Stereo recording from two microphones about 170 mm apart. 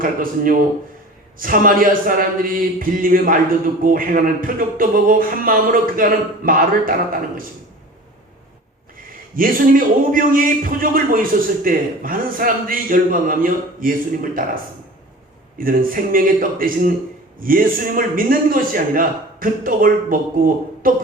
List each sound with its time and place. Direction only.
0.0 s a man's voice: 55° right (ahead or behind)
9.3 s a man's voice: 55° right (ahead or behind)